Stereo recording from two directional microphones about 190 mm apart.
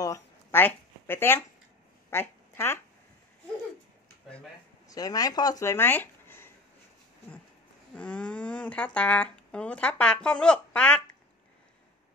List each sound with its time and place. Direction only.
0.0 s a sound: 15° left (ahead or behind)
4.8 s speech: 20° left (ahead or behind)
7.9 s speech: 5° left (ahead or behind)